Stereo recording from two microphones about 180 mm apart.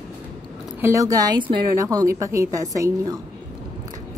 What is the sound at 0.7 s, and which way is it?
A woman's voice, 15° right (ahead or behind).